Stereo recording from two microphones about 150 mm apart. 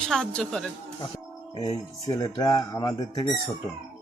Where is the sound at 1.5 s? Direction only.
30° left (ahead or behind).